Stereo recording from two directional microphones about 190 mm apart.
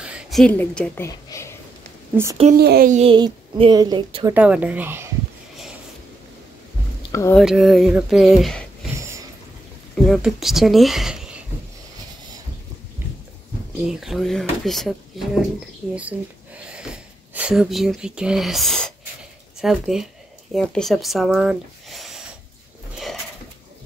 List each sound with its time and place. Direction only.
0.0 s speech: centre (ahead or behind); by 1.5 s 15° left (ahead or behind)
2.5 s speech: 55° right (ahead or behind)
2.9 s a woman's voice: 35° right (ahead or behind)
4.3 s speech: 10° right (ahead or behind)
7.1 s speech: 15° left (ahead or behind)
7.3 s speech: centre (ahead or behind)
10.0 s speech: centre (ahead or behind)
13.8 s speech: centre (ahead or behind)
15.9 s sniff: 5° right (ahead or behind)
19.6 s speech: centre (ahead or behind)